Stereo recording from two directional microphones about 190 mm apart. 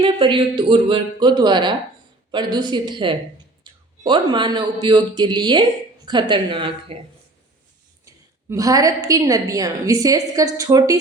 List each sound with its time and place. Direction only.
0.0 s speech: 25° right (ahead or behind)
8.0 s a woman's voice: 15° right (ahead or behind)